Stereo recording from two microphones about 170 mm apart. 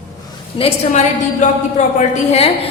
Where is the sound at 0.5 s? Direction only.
40° left (ahead or behind).